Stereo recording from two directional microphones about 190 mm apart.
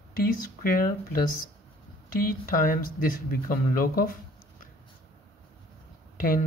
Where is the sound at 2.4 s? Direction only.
45° left (ahead or behind).